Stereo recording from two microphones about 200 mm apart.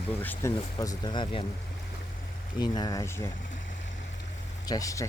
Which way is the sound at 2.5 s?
20° left (ahead or behind).